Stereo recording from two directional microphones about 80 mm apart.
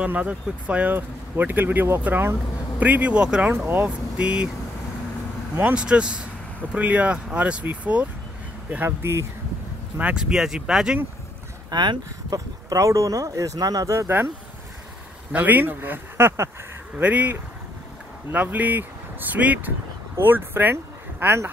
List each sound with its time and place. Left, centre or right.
0.0 s speech: centre
5.6 s speech: centre; by 9.2 s right
9.9 s speech: centre
11.7 s speech: right
15.3 s speech: right
17.0 s speech: centre